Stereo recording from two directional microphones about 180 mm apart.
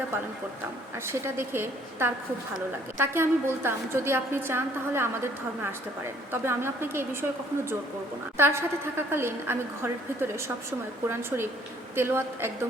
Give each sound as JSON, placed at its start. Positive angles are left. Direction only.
{"t": 0.9, "sound": "a woman's voice", "side_deg": -15}